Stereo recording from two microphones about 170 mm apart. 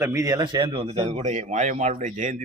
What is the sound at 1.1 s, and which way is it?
A man's voice, 45° right (ahead or behind).